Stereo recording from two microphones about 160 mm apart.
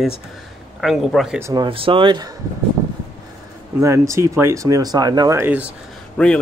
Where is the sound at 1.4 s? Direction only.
25° right (ahead or behind).